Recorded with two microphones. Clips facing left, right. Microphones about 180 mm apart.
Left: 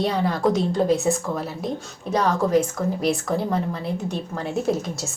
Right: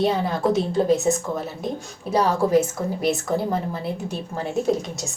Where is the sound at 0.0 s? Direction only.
Centre (ahead or behind).